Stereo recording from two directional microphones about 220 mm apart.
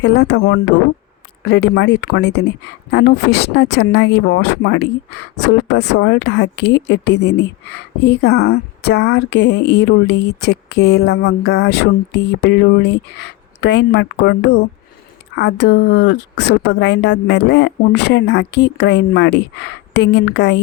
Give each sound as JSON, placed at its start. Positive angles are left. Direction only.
{"t": 0.0, "sound": "speech", "side_deg": 50}